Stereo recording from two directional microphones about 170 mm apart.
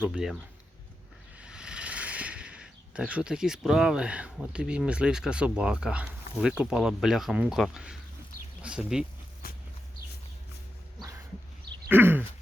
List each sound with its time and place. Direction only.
0.0 s speech: 5° right (ahead or behind)
1.4 s speech: 5° right (ahead or behind)
9.4 s a sound: 60° left (ahead or behind)
11.9 s throat clearing: 10° right (ahead or behind)